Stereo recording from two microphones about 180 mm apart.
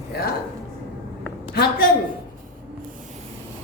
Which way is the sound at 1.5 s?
60° left (ahead or behind).